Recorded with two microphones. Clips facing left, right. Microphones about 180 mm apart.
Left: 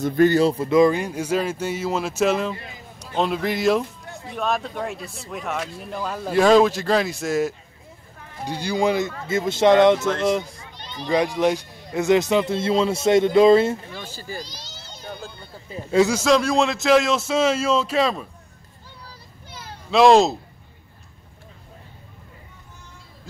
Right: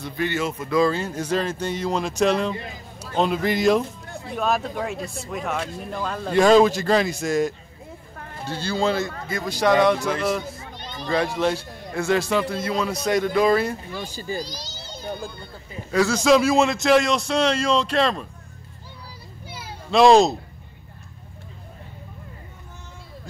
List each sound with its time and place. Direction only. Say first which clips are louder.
0.0 s speech: left 9 dB; 45° left (ahead or behind); by 7.5 s 5° left (ahead or behind)
8.5 s speech: left 2 dB; 15° left (ahead or behind)
13.9 s a child's voice: right 4 dB; 15° right (ahead or behind)
14.4 s a child's voice: right 5 dB; 40° right (ahead or behind)
16.3 s speech: right 2 dB; 5° right (ahead or behind)
19.4 s children playing: right 2 dB; 10° right (ahead or behind)
19.9 s speech: even; centre (ahead or behind)